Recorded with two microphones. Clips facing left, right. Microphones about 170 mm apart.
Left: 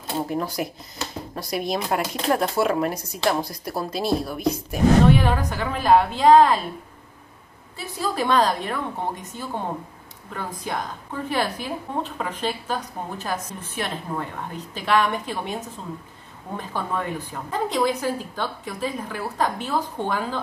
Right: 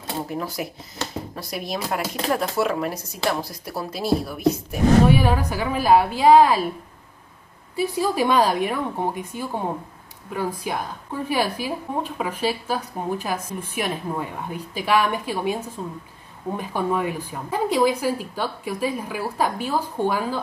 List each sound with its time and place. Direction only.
0.3 s a woman's voice: centre (ahead or behind)
7.7 s a woman's voice: 10° right (ahead or behind)